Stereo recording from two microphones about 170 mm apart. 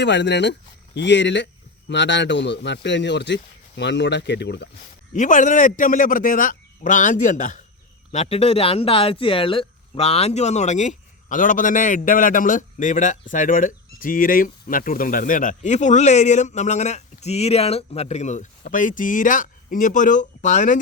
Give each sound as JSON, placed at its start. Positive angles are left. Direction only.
{"t": 0.0, "sound": "a man's voice", "side_deg": 90}
{"t": 5.1, "sound": "speech", "side_deg": 45}